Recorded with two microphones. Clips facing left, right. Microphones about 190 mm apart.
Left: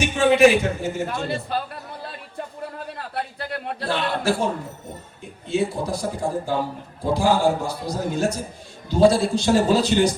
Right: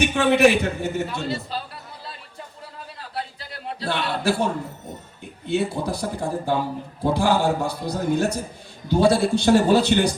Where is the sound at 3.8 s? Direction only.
65° right (ahead or behind).